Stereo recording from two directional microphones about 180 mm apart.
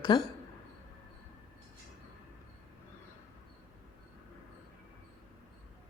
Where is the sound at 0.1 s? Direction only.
25° left (ahead or behind).